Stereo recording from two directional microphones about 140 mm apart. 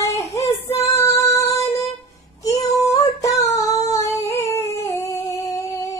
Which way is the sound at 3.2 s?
25° left (ahead or behind).